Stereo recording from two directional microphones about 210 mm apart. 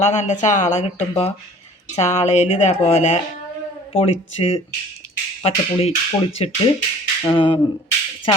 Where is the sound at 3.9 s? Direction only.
30° left (ahead or behind).